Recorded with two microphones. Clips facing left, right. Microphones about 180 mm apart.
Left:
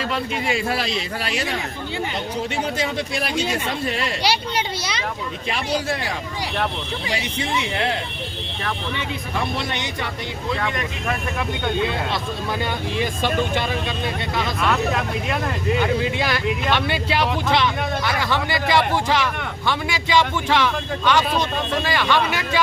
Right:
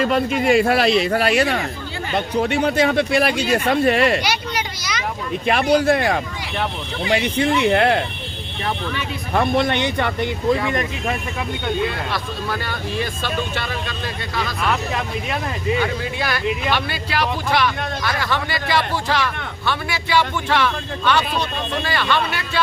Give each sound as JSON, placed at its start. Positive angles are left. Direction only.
{"t": 0.3, "sound": "speech", "side_deg": -55}
{"t": 4.2, "sound": "a sound", "side_deg": 30}
{"t": 5.5, "sound": "speech", "side_deg": -60}
{"t": 9.3, "sound": "speech", "side_deg": -55}
{"t": 13.0, "sound": "speech", "side_deg": 15}
{"t": 14.3, "sound": "speech", "side_deg": 0}
{"t": 15.8, "sound": "speech", "side_deg": 20}